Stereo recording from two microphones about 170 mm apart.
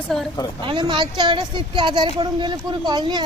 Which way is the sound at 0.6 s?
25° right (ahead or behind).